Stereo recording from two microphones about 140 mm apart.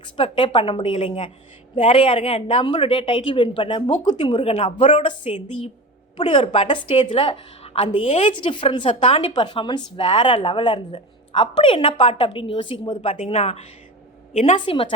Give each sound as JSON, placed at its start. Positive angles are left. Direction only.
{"t": 0.0, "sound": "a woman's voice", "side_deg": 35}
{"t": 13.0, "sound": "speech", "side_deg": 45}
{"t": 14.3, "sound": "a woman's voice", "side_deg": 60}
{"t": 14.6, "sound": "a woman's voice", "side_deg": 40}